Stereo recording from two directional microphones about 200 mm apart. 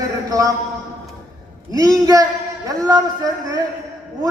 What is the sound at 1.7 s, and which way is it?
A man's voice, 15° right (ahead or behind).